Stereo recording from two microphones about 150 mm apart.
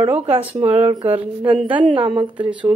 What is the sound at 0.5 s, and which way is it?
A woman's voice, 45° right (ahead or behind).